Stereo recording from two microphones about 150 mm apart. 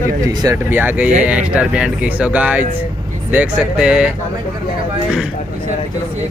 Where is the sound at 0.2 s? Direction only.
25° right (ahead or behind).